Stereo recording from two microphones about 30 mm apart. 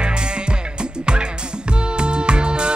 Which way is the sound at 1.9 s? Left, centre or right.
Right.